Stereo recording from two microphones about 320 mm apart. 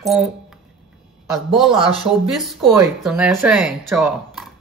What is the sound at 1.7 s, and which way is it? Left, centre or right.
Speech, centre.